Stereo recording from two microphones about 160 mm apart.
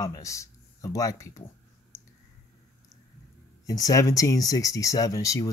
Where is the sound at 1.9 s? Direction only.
20° left (ahead or behind).